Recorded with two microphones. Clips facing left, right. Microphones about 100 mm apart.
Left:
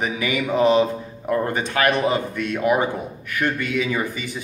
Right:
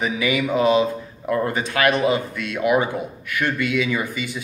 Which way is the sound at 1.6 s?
50° left (ahead or behind).